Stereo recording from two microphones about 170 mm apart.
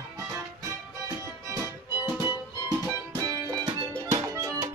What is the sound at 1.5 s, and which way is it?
Music, 15° right (ahead or behind).